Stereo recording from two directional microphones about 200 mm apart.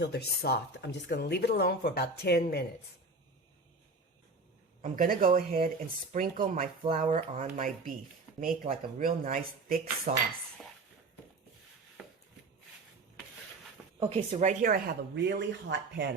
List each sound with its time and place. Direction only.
0.0 s speech: 55° left (ahead or behind)
4.8 s speech: 40° right (ahead or behind)
12.0 s chopping: centre (ahead or behind)
14.0 s speech: 25° right (ahead or behind)
14.3 s speech: 40° right (ahead or behind); by 16.0 s 60° right (ahead or behind)